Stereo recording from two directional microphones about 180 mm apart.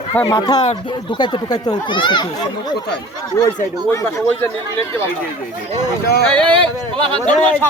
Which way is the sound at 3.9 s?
15° left (ahead or behind).